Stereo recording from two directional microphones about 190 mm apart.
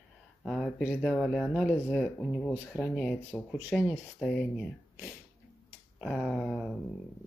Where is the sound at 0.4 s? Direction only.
Centre (ahead or behind).